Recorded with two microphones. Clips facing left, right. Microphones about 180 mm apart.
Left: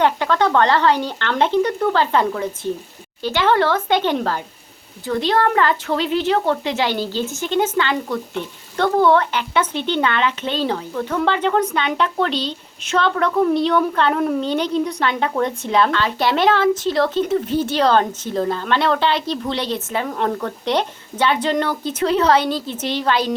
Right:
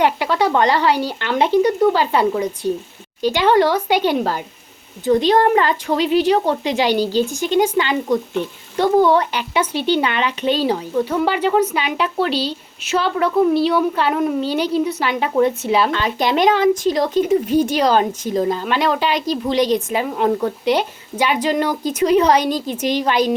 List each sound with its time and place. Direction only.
0.0 s a woman's voice: 10° right (ahead or behind)